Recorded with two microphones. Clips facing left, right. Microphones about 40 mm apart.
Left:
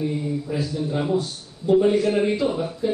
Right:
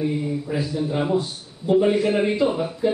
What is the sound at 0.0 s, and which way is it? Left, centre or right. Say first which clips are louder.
A man's voice: right 1 dB; centre.